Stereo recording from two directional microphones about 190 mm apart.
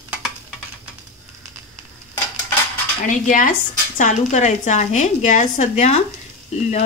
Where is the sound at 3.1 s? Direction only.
45° left (ahead or behind).